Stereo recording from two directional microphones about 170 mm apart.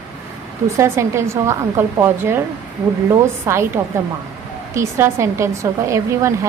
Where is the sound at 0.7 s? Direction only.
15° right (ahead or behind).